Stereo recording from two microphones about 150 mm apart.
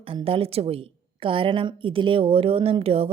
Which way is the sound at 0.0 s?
35° right (ahead or behind).